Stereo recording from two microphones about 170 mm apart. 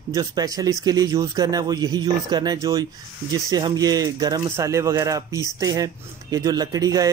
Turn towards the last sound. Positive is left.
turn(degrees=-20)  # may be behind; listen again after turning